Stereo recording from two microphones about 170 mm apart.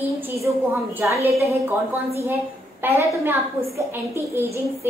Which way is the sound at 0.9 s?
15° right (ahead or behind).